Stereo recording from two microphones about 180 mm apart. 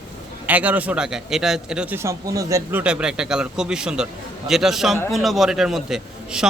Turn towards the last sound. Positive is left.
turn(degrees=-5)  # may be behind; listen again after turning